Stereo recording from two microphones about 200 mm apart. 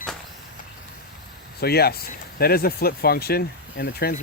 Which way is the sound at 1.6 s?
50° left (ahead or behind).